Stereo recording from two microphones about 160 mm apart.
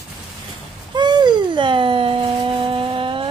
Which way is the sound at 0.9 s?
25° right (ahead or behind).